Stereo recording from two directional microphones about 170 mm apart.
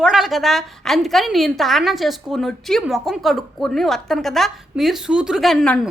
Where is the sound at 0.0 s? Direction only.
Centre (ahead or behind).